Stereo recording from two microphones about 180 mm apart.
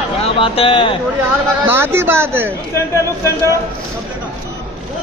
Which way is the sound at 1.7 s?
10° right (ahead or behind).